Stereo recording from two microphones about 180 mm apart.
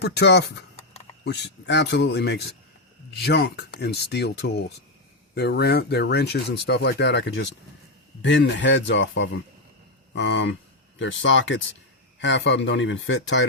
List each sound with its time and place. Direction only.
0.0 s speech: 65° left (ahead or behind); by 13.5 s 90° left